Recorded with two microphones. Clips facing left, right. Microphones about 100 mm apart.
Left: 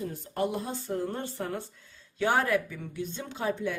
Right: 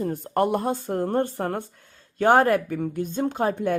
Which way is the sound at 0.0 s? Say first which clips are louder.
Right 8 dB; 55° right (ahead or behind).